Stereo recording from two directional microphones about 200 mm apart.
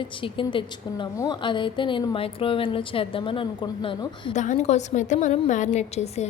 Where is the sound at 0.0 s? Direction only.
25° left (ahead or behind).